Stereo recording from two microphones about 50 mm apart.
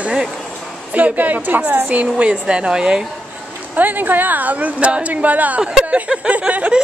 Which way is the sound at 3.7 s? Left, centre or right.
Right.